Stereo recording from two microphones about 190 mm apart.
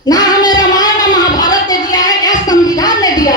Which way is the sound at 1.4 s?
20° left (ahead or behind).